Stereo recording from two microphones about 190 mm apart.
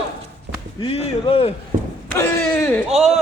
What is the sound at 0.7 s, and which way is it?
Speech, 30° left (ahead or behind).